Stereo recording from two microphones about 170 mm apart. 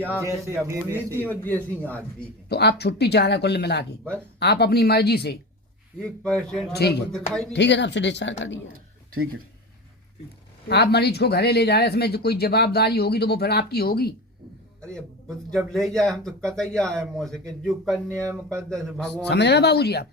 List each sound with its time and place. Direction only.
0.2 s a man's voice: 15° right (ahead or behind)
1.1 s speech: 10° left (ahead or behind)
2.5 s speech: 75° left (ahead or behind)
6.0 s speech: 5° left (ahead or behind)
6.7 s speech: 70° left (ahead or behind)
7.5 s speech: 90° left
10.7 s speech: 75° left (ahead or behind)
14.8 s a sound: 5° left (ahead or behind)
15.4 s speech: 5° left (ahead or behind)
18.1 s speech: 20° right (ahead or behind)
18.9 s speech: 5° left (ahead or behind)
19.3 s speech: 80° left